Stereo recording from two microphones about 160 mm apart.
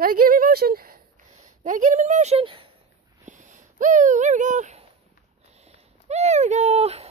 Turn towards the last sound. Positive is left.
turn(degrees=-40)  # may be behind; listen again after turning